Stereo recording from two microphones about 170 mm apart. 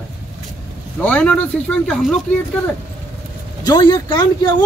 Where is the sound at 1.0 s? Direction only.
10° left (ahead or behind).